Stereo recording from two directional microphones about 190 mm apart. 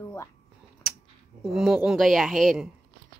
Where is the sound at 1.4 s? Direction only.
Centre (ahead or behind).